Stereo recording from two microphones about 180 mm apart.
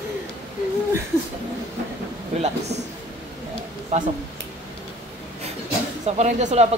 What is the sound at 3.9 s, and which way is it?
Speech, 40° right (ahead or behind).